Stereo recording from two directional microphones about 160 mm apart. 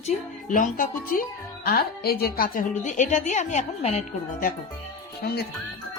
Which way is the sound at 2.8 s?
50° left (ahead or behind).